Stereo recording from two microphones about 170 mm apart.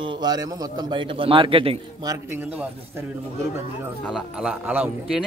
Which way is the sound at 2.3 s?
10° right (ahead or behind).